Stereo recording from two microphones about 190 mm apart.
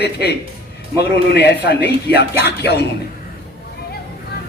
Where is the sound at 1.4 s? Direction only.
60° left (ahead or behind).